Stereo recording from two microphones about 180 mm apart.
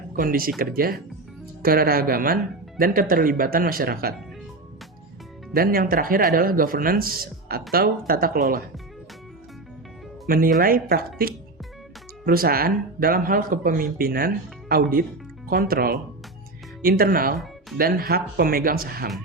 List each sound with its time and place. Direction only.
0.2 s speech: 55° right (ahead or behind)
5.5 s speech: 55° right (ahead or behind)
10.2 s speech: 55° right (ahead or behind)